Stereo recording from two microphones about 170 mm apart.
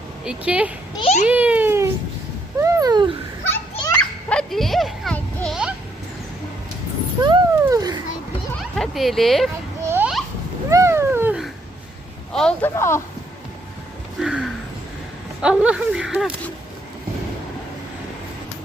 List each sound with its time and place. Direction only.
0.3 s speech: 5° right (ahead or behind)
0.9 s a child's voice: 40° left (ahead or behind)
1.3 s babbling: 10° right (ahead or behind)
2.6 s a sound: 15° right (ahead or behind)
3.9 s goat: 5° left (ahead or behind)
7.2 s a sound: 25° right (ahead or behind)
8.7 s speech: centre (ahead or behind)
9.8 s a sound: 15° right (ahead or behind)
10.7 s cat: 15° right (ahead or behind)
12.3 s speech: 5° left (ahead or behind)
12.7 s speech: 15° left (ahead or behind)
14.2 s a sound: centre (ahead or behind)
15.4 s speech: 5° right (ahead or behind)